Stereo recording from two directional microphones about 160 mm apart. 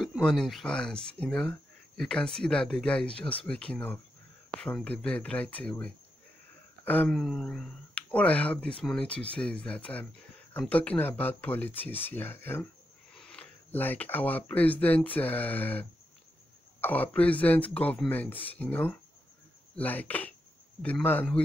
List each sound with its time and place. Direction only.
0.0 s speech: centre (ahead or behind)